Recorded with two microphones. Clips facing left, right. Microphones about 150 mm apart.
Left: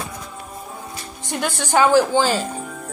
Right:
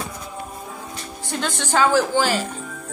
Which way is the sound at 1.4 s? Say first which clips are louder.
Left 2 dB; 15° left (ahead or behind).